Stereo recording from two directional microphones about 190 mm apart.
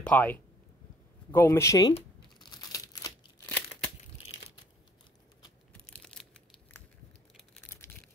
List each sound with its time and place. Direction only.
0.0 s speech: 10° left (ahead or behind)
2.0 s crumpling: 25° left (ahead or behind)
3.4 s crumpling: 10° left (ahead or behind)
6.0 s crumpling: 5° left (ahead or behind)
7.3 s a sound: 10° left (ahead or behind)